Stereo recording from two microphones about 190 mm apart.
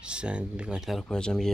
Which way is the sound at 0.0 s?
5° right (ahead or behind).